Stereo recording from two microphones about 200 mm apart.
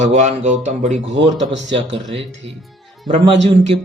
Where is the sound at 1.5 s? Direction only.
65° right (ahead or behind).